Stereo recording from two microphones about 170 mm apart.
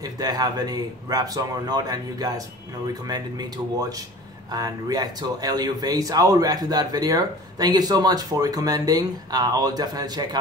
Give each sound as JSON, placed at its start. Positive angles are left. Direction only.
{"t": 0.0, "sound": "speech", "side_deg": -20}